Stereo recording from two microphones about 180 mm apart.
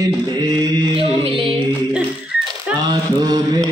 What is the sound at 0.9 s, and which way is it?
Mantra, 30° right (ahead or behind).